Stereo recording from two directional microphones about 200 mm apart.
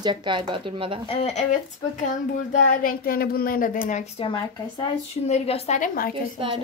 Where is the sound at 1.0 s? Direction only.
30° left (ahead or behind).